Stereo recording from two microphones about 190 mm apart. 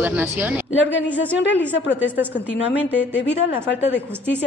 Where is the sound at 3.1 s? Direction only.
65° left (ahead or behind).